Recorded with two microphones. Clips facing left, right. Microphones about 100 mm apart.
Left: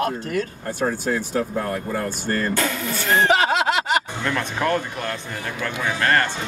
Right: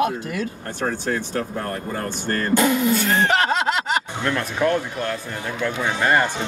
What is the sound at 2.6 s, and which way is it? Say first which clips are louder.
Speech: right 6 dB; 15° right (ahead or behind).